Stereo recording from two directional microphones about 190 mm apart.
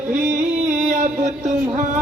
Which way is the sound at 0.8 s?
45° right (ahead or behind).